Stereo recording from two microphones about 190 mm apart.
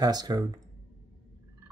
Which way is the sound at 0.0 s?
20° right (ahead or behind).